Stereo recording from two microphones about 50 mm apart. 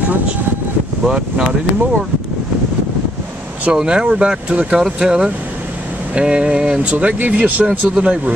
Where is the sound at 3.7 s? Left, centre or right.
Centre.